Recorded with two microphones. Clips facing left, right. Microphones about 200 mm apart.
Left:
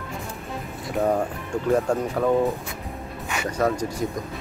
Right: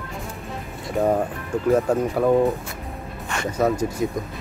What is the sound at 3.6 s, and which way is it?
Speech, 5° right (ahead or behind).